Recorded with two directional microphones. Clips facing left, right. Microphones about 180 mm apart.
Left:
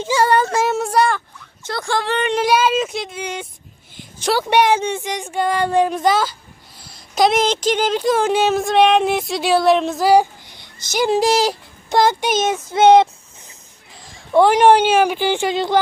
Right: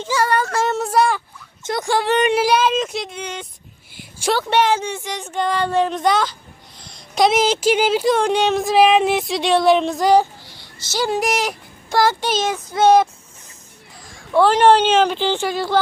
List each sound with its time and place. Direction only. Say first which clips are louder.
0.1 s a sound: left 3 dB; 25° left (ahead or behind)
0.6 s a sound: left 1 dB; centre (ahead or behind)
1.6 s speech: right 2 dB; 20° right (ahead or behind)
2.4 s speech: left 1 dB; 5° left (ahead or behind)
8.1 s speech: left 1 dB; 5° left (ahead or behind)
11.1 s child singing: left 6 dB; 30° left (ahead or behind)
11.9 s child singing: left 2 dB; 20° left (ahead or behind)
14.3 s speech: left 1 dB; 15° left (ahead or behind)